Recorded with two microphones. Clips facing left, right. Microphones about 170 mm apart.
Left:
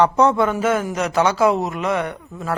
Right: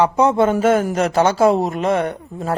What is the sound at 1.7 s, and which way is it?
Speech, 30° right (ahead or behind).